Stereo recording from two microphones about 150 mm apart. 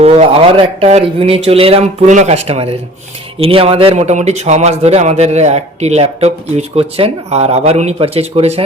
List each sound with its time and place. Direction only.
0.0 s speech: 45° right (ahead or behind)